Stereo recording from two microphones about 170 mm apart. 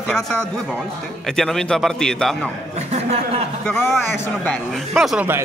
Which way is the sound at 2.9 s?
40° right (ahead or behind).